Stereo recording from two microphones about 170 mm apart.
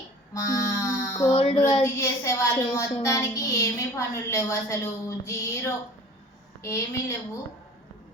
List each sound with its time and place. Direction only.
0.3 s music: 20° left (ahead or behind)
1.3 s child singing: 35° left (ahead or behind)
1.8 s child singing: 15° left (ahead or behind)